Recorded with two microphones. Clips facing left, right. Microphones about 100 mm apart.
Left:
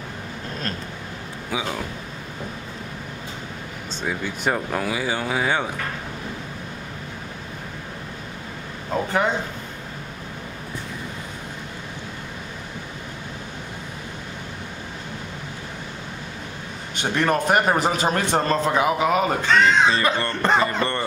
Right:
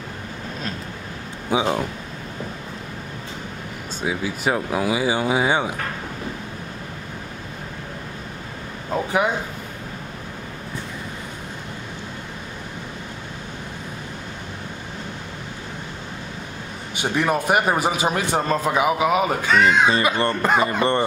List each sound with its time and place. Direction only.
1.5 s speech: 25° right (ahead or behind)
4.0 s a man's voice: 5° right (ahead or behind)
8.9 s a man's voice: 10° right (ahead or behind)
16.9 s a man's voice: 10° right (ahead or behind)